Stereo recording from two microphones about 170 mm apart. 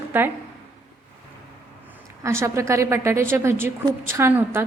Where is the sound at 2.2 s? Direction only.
15° right (ahead or behind).